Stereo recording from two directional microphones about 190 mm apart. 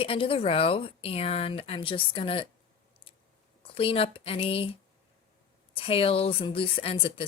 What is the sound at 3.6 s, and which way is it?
Speech, 30° left (ahead or behind).